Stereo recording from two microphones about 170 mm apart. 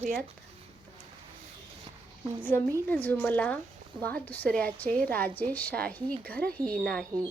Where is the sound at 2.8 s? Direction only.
10° left (ahead or behind).